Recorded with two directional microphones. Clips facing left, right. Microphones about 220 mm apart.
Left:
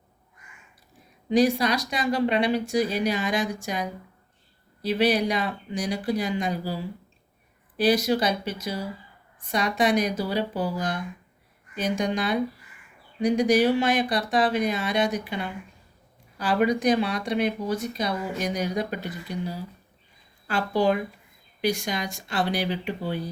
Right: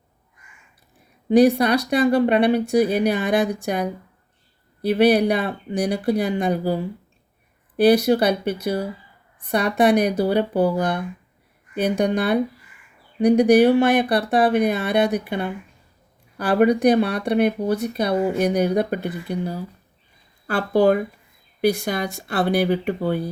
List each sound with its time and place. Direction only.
1.3 s speech: 60° right (ahead or behind)
20.6 s speech: 55° right (ahead or behind)